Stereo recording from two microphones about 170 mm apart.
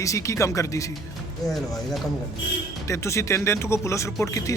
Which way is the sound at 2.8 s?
15° left (ahead or behind).